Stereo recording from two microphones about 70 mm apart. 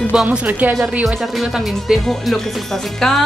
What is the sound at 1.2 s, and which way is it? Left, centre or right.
Speech, centre.